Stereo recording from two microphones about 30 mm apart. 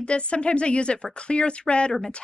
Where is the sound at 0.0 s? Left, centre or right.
Left.